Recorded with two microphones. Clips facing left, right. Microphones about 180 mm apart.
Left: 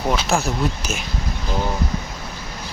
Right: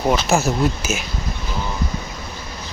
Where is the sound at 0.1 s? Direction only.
5° right (ahead or behind).